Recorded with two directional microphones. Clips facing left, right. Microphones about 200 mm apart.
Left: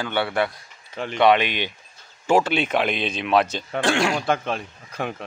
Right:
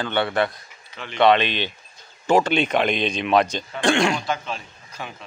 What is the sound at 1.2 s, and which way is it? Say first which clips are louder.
A man's voice: right 1 dB; 15° left (ahead or behind).